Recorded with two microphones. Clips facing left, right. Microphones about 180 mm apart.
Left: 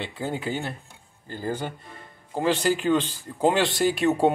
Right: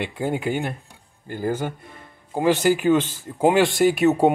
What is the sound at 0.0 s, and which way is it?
Speech, 15° right (ahead or behind).